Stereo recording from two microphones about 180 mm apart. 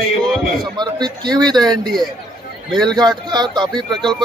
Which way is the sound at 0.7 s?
25° right (ahead or behind).